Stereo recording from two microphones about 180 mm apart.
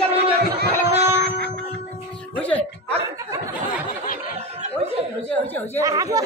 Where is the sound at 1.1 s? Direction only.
65° right (ahead or behind).